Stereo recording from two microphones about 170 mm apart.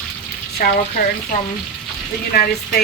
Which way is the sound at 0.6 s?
55° left (ahead or behind).